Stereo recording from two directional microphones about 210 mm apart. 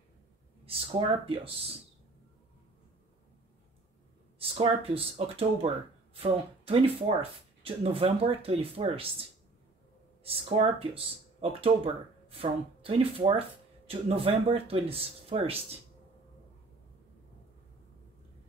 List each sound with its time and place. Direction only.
0.7 s speech: 25° right (ahead or behind)
4.4 s speech: 25° right (ahead or behind)
10.2 s speech: 25° right (ahead or behind)